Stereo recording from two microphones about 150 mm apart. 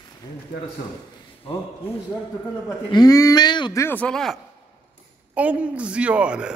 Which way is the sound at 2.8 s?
25° left (ahead or behind).